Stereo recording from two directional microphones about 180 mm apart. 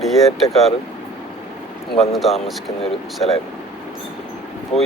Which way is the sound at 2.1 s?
Centre (ahead or behind).